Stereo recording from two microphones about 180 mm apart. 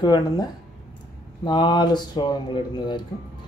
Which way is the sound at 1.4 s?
25° left (ahead or behind).